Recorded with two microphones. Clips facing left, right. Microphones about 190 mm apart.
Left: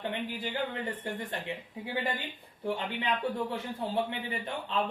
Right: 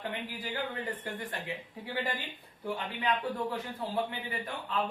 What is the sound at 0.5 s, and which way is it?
Speech, 25° left (ahead or behind).